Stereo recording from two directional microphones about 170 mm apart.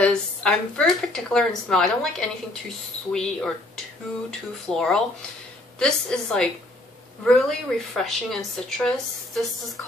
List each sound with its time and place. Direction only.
0.0 s speech: 5° left (ahead or behind)